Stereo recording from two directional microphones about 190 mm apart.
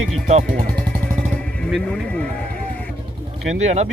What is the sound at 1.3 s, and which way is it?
Music, 5° left (ahead or behind).